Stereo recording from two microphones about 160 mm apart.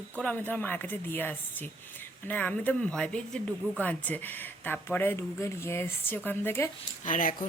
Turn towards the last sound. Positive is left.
turn(degrees=55)  # may be behind; listen again after turning